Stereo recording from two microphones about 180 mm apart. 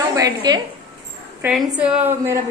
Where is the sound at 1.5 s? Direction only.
5° right (ahead or behind).